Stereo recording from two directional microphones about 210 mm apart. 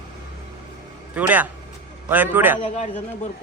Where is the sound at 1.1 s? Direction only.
5° right (ahead or behind).